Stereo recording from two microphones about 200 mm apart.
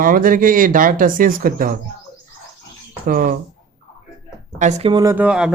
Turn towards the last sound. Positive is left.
turn(degrees=-5)  # may be behind; listen again after turning